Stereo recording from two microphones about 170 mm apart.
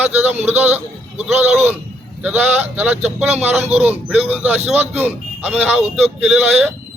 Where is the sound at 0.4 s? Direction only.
10° right (ahead or behind).